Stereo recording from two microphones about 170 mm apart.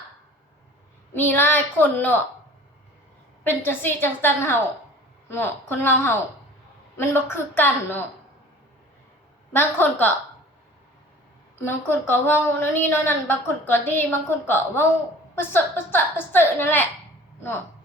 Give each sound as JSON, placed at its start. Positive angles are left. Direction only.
{"t": 1.1, "sound": "a woman's voice", "side_deg": 10}
{"t": 3.4, "sound": "a woman's voice", "side_deg": 10}
{"t": 9.5, "sound": "a woman's voice", "side_deg": 10}
{"t": 11.6, "sound": "a woman's voice", "side_deg": 15}